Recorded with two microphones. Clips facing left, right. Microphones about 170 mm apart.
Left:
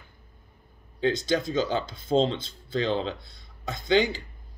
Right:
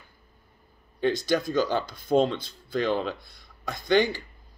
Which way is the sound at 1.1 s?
20° left (ahead or behind).